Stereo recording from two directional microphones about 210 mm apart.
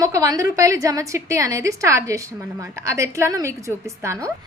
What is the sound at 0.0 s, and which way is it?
A woman's voice, 15° right (ahead or behind).